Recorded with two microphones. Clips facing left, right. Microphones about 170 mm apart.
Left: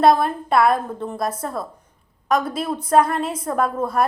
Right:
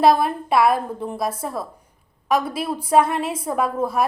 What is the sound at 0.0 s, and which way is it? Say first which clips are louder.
A woman's voice: left 1 dB; 5° right (ahead or behind).